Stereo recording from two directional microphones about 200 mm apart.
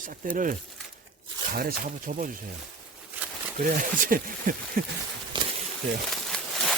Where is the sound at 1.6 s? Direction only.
45° right (ahead or behind).